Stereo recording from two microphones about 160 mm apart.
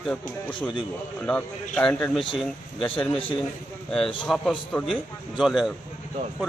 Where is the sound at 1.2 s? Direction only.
5° left (ahead or behind).